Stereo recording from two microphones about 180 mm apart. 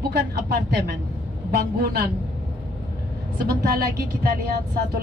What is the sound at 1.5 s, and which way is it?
Speech, 60° right (ahead or behind).